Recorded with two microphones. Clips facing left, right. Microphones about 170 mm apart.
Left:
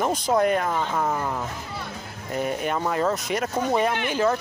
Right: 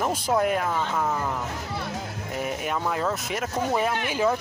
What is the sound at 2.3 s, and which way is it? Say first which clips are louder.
Speech: left 3 dB; 5° right (ahead or behind).